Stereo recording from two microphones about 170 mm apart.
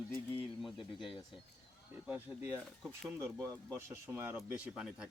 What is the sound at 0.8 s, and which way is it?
Speech, 30° left (ahead or behind).